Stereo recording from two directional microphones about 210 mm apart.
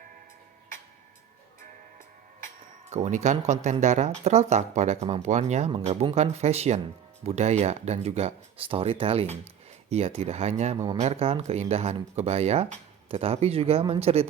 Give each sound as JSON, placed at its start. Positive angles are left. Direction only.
{"t": 2.9, "sound": "speech", "side_deg": -35}